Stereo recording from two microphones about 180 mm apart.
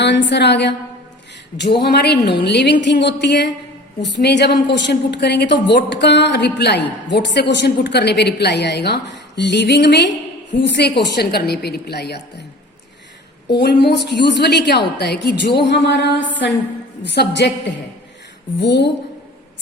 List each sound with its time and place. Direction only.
0.0 s a woman's voice: 75° left (ahead or behind)
13.6 s a woman's voice: 65° left (ahead or behind)
15.6 s music: 75° left (ahead or behind)
17.0 s a woman's voice: 70° left (ahead or behind)
18.6 s a woman's voice: 70° left (ahead or behind)